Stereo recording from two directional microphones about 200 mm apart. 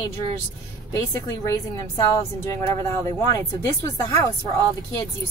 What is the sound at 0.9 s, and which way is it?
Speech, 15° left (ahead or behind).